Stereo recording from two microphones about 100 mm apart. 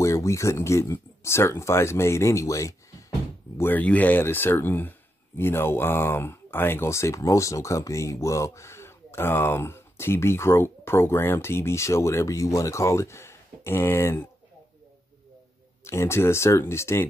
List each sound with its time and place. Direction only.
0.0 s speech: 30° left (ahead or behind)
3.5 s speech: 20° left (ahead or behind)
15.8 s speech: 25° left (ahead or behind)